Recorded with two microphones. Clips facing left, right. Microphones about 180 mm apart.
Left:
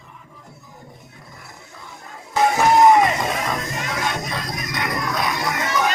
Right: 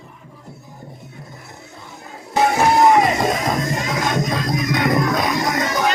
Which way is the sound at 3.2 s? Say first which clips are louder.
Right 5 dB; 40° right (ahead or behind).